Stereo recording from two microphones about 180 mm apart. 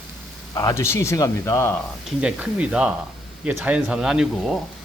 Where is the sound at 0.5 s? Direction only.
20° left (ahead or behind).